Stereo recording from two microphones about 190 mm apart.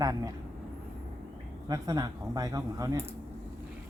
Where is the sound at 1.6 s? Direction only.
20° right (ahead or behind).